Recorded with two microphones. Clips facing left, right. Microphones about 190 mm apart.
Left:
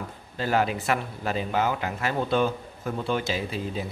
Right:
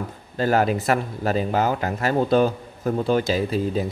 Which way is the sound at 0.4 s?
45° right (ahead or behind).